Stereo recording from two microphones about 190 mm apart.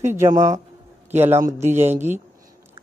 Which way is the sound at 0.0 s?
15° right (ahead or behind).